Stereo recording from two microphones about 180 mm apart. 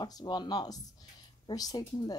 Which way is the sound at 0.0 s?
25° left (ahead or behind).